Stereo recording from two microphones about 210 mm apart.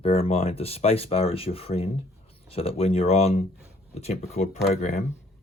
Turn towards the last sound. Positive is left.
turn(degrees=35)  # may be behind; listen again after turning